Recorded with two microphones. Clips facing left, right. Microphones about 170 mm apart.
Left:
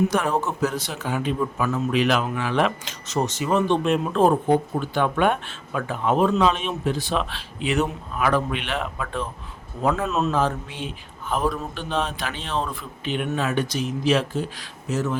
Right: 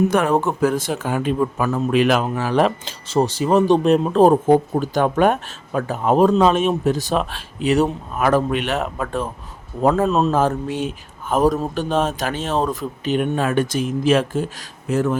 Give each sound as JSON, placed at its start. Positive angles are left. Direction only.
{"t": 0.1, "sound": "speech", "side_deg": -55}
{"t": 10.3, "sound": "speech", "side_deg": -45}